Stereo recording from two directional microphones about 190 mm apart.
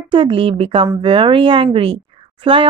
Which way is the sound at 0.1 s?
25° right (ahead or behind).